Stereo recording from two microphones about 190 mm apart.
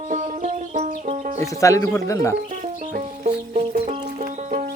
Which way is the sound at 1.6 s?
15° left (ahead or behind).